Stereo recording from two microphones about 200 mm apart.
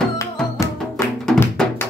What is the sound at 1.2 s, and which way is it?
Music, 5° left (ahead or behind).